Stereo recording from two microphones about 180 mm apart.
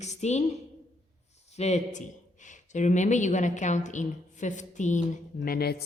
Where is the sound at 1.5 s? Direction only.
35° left (ahead or behind).